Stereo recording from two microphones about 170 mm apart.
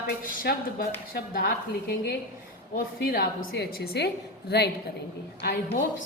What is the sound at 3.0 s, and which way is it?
A woman's voice, 60° left (ahead or behind).